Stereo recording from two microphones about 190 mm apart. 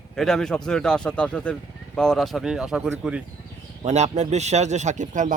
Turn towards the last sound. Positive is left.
turn(degrees=-40)  # may be behind; listen again after turning